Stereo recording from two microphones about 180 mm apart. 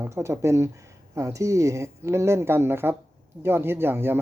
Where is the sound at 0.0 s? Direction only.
15° right (ahead or behind).